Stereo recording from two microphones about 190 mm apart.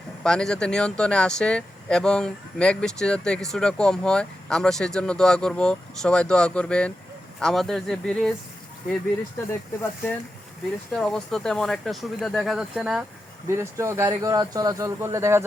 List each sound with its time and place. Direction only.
0.2 s speech: 5° left (ahead or behind)
10.9 s speech: centre (ahead or behind)
13.5 s speech: 15° right (ahead or behind)